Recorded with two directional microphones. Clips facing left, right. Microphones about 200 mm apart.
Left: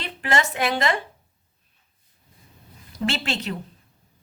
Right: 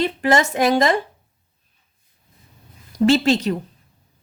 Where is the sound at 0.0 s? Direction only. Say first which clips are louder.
Right 7 dB; 40° right (ahead or behind).